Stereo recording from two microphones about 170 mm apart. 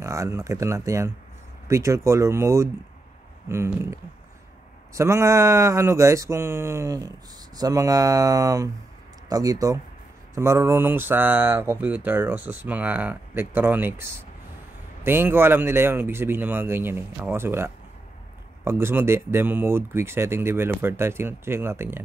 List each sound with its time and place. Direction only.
0.0 s speech: 15° right (ahead or behind)